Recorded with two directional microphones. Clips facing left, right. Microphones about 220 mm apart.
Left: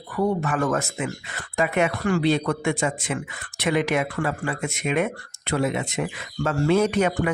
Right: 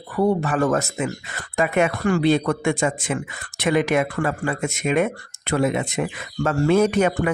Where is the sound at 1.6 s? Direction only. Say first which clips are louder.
Right 2 dB; 50° right (ahead or behind).